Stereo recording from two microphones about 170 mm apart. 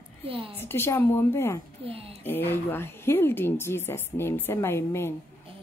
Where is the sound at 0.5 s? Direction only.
15° left (ahead or behind).